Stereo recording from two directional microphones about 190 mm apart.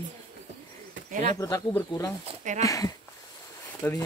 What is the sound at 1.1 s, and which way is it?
Speech, 40° right (ahead or behind).